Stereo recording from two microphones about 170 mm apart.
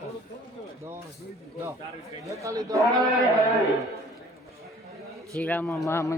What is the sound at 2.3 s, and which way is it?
Speech, 20° right (ahead or behind).